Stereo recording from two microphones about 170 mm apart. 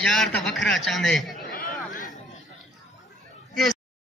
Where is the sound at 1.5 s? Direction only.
55° left (ahead or behind).